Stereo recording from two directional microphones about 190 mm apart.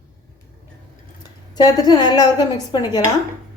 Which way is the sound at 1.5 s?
20° left (ahead or behind).